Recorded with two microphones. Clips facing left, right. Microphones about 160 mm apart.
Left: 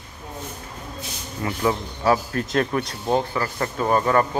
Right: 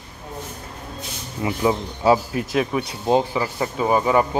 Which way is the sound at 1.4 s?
15° right (ahead or behind).